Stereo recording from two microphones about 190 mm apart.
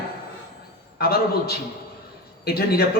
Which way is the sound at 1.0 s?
55° left (ahead or behind).